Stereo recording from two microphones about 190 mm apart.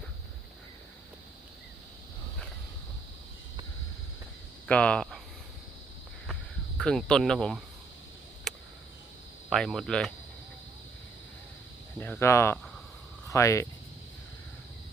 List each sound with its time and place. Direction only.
4.7 s speech: 5° left (ahead or behind)
6.7 s speech: 5° left (ahead or behind)
8.5 s a sound: centre (ahead or behind)
9.5 s speech: centre (ahead or behind)
11.9 s speech: 10° left (ahead or behind)